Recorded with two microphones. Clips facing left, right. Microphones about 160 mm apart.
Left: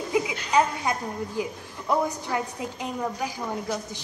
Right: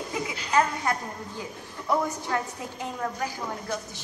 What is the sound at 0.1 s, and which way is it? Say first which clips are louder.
Speech: left 4 dB; 15° left (ahead or behind).